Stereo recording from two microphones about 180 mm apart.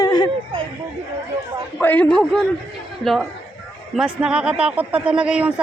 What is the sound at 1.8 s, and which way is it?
Speech, 10° left (ahead or behind).